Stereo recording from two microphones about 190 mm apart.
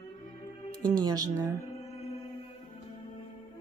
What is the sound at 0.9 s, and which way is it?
Speech, 20° right (ahead or behind).